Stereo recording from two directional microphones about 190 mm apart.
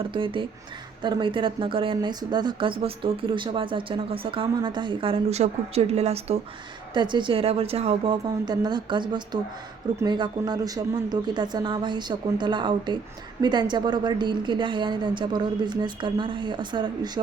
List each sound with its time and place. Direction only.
0.0 s a woman's voice: 25° right (ahead or behind)